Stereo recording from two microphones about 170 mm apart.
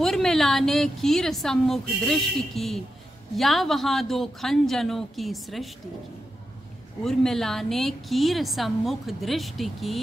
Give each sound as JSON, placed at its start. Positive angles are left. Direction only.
{"t": 0.0, "sound": "a woman's voice", "side_deg": 0}
{"t": 7.1, "sound": "a woman's voice", "side_deg": 0}